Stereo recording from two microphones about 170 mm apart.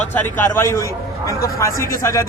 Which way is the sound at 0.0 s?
10° left (ahead or behind).